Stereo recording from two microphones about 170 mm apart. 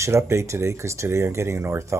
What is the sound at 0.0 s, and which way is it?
Speech, 15° right (ahead or behind).